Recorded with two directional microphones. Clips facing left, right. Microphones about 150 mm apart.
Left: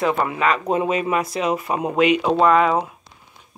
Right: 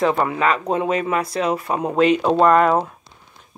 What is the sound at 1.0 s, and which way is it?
Speech, 15° left (ahead or behind).